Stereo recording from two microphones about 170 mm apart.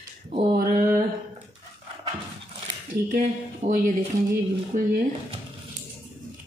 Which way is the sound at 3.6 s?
50° right (ahead or behind).